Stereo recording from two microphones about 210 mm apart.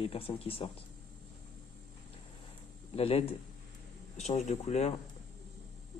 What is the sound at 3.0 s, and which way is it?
Speech, 25° left (ahead or behind).